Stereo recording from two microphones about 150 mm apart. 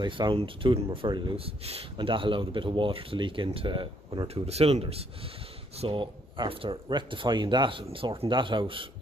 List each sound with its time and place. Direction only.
0.0 s speech: 30° right (ahead or behind)
4.3 s speech: 45° right (ahead or behind)